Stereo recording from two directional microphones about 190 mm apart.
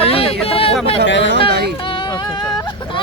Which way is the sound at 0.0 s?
30° left (ahead or behind).